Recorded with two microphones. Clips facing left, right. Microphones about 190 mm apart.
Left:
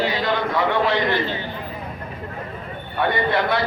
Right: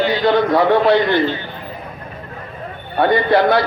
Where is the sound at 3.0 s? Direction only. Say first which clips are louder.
Right 7 dB; 40° right (ahead or behind).